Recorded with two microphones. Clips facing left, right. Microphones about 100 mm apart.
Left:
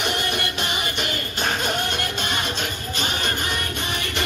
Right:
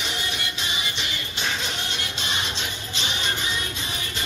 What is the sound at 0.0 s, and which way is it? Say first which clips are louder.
Music: left 6 dB; 55° left (ahead or behind).